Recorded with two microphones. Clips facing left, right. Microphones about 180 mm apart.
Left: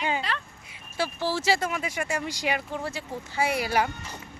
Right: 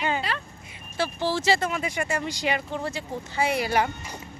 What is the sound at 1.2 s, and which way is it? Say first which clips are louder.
Speech: right 2 dB; 10° left (ahead or behind).